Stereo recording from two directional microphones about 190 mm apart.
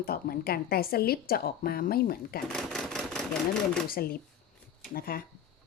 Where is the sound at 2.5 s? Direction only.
5° left (ahead or behind).